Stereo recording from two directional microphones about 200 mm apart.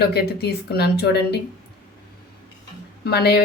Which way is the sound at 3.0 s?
55° left (ahead or behind).